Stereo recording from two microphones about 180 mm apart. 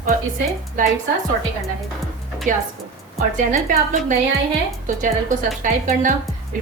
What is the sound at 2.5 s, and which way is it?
A woman's voice, 45° right (ahead or behind).